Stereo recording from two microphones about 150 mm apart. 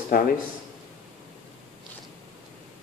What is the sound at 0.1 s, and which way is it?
Speech, 70° left (ahead or behind).